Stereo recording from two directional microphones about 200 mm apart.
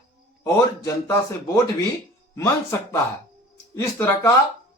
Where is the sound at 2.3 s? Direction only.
15° left (ahead or behind).